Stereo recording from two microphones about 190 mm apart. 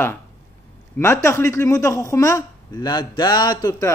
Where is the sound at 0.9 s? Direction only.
15° left (ahead or behind).